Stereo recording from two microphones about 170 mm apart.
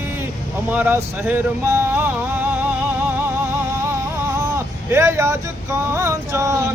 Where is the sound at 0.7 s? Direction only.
10° right (ahead or behind).